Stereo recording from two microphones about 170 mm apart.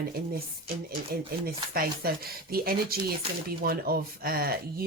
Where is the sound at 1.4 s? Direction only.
60° right (ahead or behind).